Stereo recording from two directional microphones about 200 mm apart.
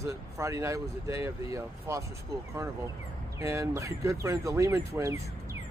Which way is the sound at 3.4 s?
15° right (ahead or behind).